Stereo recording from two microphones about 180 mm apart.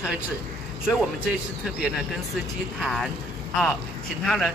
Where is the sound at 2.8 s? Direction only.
Centre (ahead or behind).